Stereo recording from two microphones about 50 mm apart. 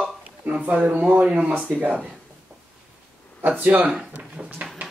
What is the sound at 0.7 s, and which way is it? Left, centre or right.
Speech, right.